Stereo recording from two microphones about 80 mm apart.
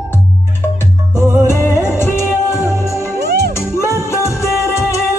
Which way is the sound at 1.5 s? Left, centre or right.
Left.